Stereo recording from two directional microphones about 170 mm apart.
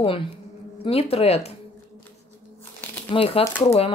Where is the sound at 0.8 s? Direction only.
35° left (ahead or behind).